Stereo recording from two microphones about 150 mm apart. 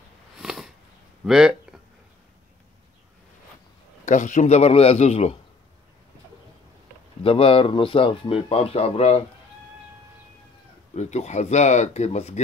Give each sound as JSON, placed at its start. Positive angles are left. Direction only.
{"t": 0.4, "sound": "a sound", "side_deg": -5}
{"t": 4.0, "sound": "a man's voice", "side_deg": 55}
{"t": 7.2, "sound": "speech", "side_deg": 35}
{"t": 11.0, "sound": "a man's voice", "side_deg": 50}